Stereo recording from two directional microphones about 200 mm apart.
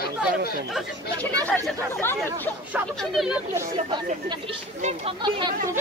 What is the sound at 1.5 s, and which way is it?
Speech, centre (ahead or behind).